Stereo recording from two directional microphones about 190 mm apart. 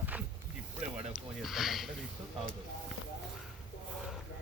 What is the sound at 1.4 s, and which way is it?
Sniff, centre (ahead or behind).